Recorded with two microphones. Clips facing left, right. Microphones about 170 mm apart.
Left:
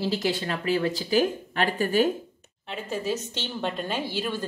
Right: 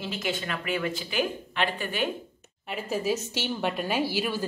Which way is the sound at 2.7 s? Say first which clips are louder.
Right 1 dB; 10° right (ahead or behind).